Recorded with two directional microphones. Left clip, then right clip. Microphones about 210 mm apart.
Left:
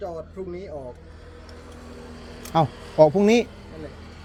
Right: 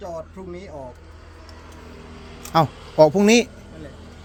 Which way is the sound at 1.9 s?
50° left (ahead or behind).